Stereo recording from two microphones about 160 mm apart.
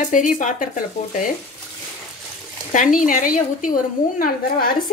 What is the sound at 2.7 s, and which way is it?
Speech, 55° left (ahead or behind).